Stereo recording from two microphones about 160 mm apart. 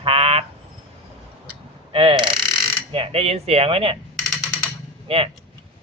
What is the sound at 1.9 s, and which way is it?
A man's voice, 30° right (ahead or behind).